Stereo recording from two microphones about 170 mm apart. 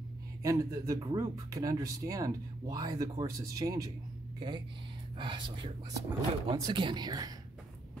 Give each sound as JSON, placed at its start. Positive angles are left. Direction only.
{"t": 0.4, "sound": "speech", "side_deg": -20}